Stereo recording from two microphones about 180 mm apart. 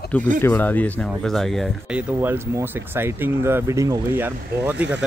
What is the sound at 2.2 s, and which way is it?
Speech, 10° right (ahead or behind).